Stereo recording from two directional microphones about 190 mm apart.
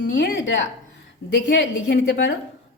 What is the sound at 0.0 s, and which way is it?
A woman's voice, 65° left (ahead or behind).